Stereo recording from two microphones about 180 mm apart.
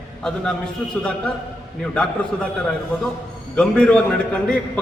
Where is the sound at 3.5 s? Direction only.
5° left (ahead or behind).